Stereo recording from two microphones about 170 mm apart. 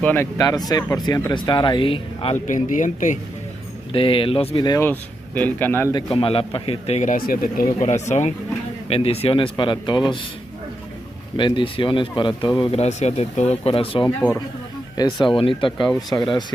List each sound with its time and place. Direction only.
0.0 s speech: 15° left (ahead or behind); by 2.3 s 30° left (ahead or behind)
2.4 s a man's voice: 50° left (ahead or behind)
3.9 s speech: 30° left (ahead or behind)
4.8 s speech: 10° left (ahead or behind)
5.9 s a man's voice: 30° left (ahead or behind)
11.3 s speech: 30° left (ahead or behind)